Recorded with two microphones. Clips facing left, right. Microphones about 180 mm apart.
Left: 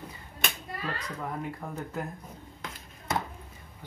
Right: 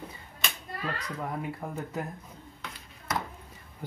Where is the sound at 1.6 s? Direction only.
5° right (ahead or behind).